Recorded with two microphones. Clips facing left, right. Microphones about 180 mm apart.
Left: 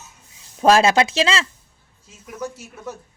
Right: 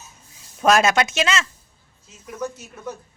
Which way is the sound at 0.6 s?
30° left (ahead or behind).